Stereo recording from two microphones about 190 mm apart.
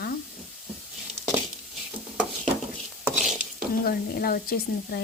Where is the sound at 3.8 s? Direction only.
50° left (ahead or behind).